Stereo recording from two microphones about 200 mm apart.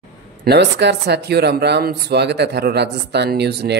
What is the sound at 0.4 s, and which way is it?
Speech, 60° right (ahead or behind).